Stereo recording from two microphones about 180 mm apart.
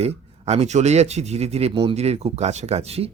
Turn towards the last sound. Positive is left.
turn(degrees=-35)  # may be behind; listen again after turning